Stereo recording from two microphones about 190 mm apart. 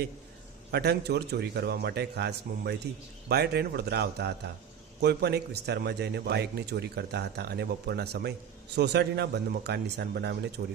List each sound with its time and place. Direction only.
0.7 s a man's voice: 60° right (ahead or behind)